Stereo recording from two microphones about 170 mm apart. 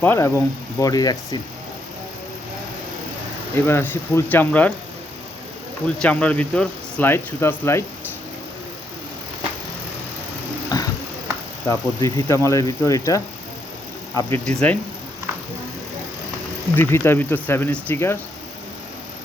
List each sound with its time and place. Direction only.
0.0 s speech: 15° left (ahead or behind)
3.5 s speech: 15° left (ahead or behind)
6.0 s speech: 5° left (ahead or behind)
10.7 s vehicle: 25° left (ahead or behind)
11.6 s speech: 15° left (ahead or behind)
16.7 s speech: 15° left (ahead or behind)